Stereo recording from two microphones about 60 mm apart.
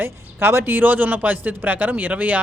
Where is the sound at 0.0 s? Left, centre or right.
Right.